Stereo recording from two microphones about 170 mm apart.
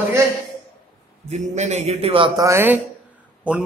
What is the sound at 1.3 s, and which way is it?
A man's voice, 45° right (ahead or behind).